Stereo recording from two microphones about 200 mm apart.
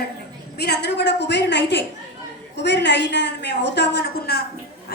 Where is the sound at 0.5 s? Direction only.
55° left (ahead or behind).